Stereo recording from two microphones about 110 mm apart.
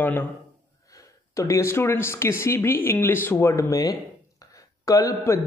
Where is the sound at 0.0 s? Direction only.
15° left (ahead or behind).